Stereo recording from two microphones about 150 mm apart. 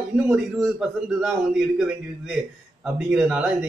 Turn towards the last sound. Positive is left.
turn(degrees=-5)  # may be behind; listen again after turning